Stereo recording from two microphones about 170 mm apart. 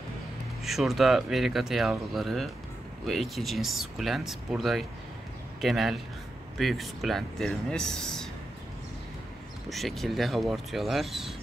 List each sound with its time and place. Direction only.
0.7 s speech: centre (ahead or behind)
9.7 s speech: centre (ahead or behind)